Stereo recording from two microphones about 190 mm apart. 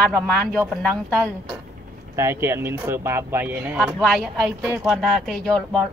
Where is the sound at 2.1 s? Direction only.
15° right (ahead or behind).